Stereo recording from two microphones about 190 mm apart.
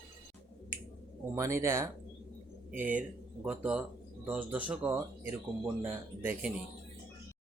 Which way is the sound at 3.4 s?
5° right (ahead or behind).